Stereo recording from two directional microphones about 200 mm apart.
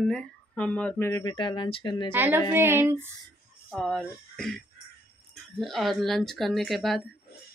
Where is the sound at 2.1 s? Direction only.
10° right (ahead or behind).